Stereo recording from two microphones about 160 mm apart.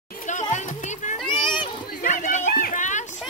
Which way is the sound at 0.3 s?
50° left (ahead or behind).